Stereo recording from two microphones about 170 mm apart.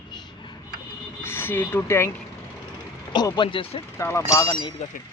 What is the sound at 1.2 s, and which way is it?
Speech, 15° left (ahead or behind).